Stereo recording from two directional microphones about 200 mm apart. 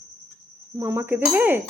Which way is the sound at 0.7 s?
15° right (ahead or behind).